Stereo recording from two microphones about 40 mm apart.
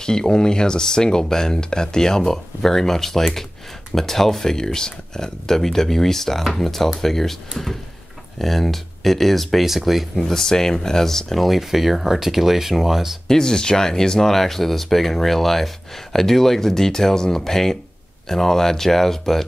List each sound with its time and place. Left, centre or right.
0.0 s speech: centre
10.2 s speech: centre
13.3 s speech: centre